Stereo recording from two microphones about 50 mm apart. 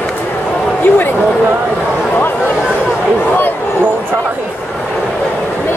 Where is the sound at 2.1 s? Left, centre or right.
Left.